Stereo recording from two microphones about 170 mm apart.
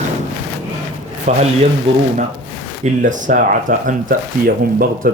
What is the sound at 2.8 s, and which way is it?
Speech, 50° right (ahead or behind).